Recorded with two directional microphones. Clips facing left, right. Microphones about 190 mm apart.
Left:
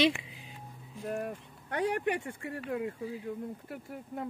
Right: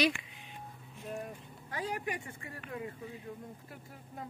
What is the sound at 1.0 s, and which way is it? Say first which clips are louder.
Speech: left 6 dB; 65° left (ahead or behind).